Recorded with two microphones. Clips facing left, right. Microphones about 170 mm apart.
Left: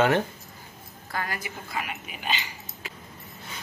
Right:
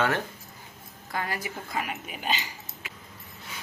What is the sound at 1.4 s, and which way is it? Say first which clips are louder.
Speech: right 1 dB; 40° right (ahead or behind).